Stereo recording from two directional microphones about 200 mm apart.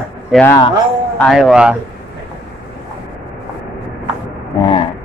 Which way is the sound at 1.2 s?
Centre (ahead or behind).